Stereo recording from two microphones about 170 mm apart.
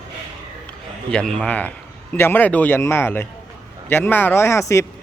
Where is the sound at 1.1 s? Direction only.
5° left (ahead or behind).